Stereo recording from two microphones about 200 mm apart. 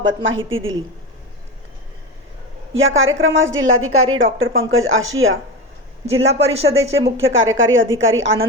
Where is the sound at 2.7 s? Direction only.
80° right.